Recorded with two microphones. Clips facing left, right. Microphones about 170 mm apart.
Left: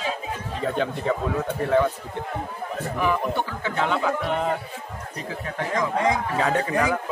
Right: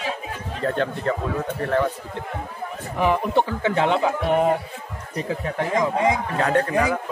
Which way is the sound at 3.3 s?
30° right (ahead or behind).